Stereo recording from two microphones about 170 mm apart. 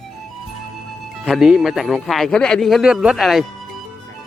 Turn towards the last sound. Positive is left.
turn(degrees=0)  # may be behind; listen again after turning